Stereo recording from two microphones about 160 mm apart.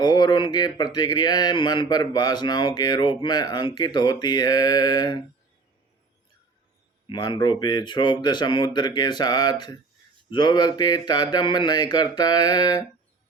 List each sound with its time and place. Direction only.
0.0 s a man's voice: 25° left (ahead or behind)
7.1 s a man's voice: 25° left (ahead or behind)